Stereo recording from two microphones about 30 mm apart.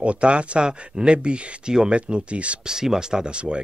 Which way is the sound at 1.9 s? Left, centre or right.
Right.